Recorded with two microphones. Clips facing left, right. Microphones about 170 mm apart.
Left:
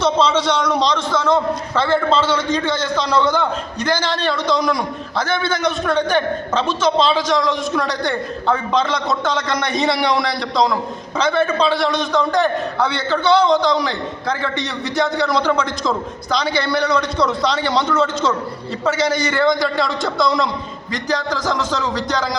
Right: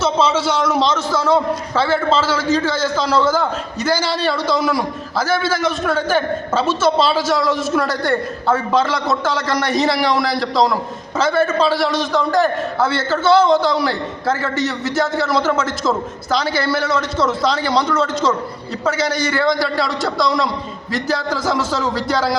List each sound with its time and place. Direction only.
0.0 s a man's voice: 5° right (ahead or behind)